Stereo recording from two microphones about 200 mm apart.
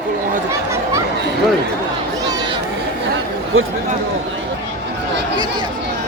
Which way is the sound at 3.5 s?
90° right.